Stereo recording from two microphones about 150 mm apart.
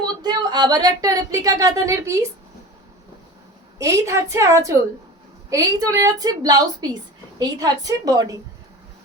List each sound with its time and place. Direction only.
0.0 s speech: 30° right (ahead or behind)
3.8 s a woman's voice: 20° right (ahead or behind)